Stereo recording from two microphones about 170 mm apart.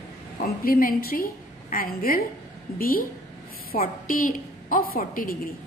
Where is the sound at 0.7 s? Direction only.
55° left (ahead or behind).